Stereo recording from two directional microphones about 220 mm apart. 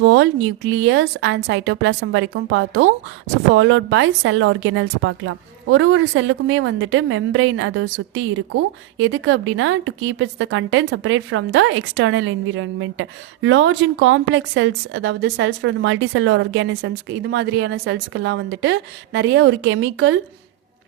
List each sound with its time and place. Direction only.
0.0 s a woman's voice: 55° right (ahead or behind)